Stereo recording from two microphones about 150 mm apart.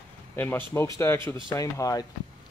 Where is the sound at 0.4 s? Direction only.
15° left (ahead or behind).